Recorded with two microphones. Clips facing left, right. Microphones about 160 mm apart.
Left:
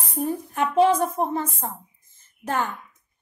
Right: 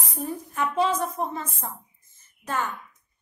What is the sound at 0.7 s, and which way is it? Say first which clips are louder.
Speech: left 7 dB; 55° left (ahead or behind).